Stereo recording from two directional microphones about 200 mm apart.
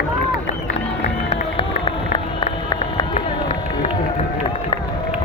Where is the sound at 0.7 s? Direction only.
30° left (ahead or behind).